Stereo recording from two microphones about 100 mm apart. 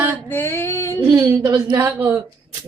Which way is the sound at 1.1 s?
30° right (ahead or behind).